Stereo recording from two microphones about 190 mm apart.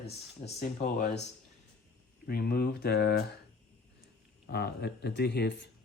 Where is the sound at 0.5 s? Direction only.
35° left (ahead or behind).